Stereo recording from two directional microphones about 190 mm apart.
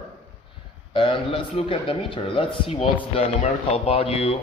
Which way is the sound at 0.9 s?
25° left (ahead or behind).